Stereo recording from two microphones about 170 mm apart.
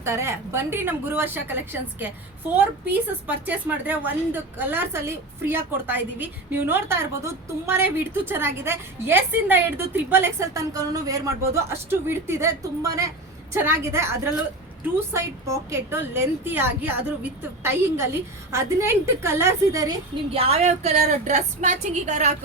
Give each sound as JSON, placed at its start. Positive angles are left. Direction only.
{"t": 0.0, "sound": "a woman's voice", "side_deg": -15}
{"t": 15.7, "sound": "a woman's voice", "side_deg": -15}
{"t": 20.3, "sound": "a woman's voice", "side_deg": -35}